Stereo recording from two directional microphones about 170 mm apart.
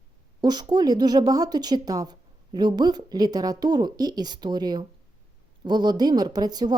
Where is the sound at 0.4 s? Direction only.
25° right (ahead or behind).